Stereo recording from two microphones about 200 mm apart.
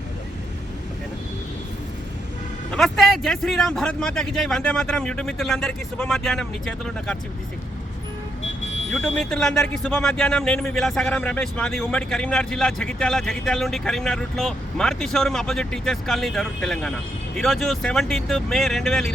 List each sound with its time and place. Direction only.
2.7 s speech: centre (ahead or behind)
8.6 s vehicle: 70° left (ahead or behind)
8.9 s speech: 5° left (ahead or behind)